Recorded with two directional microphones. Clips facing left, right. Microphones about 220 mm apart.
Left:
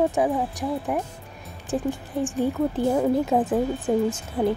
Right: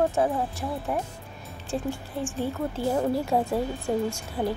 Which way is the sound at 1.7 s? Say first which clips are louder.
Left 4 dB; 20° left (ahead or behind).